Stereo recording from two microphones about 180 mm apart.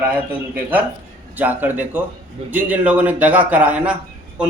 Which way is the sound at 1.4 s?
10° right (ahead or behind).